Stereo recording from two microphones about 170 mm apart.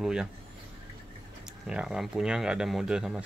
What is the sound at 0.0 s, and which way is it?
Speech, 5° right (ahead or behind).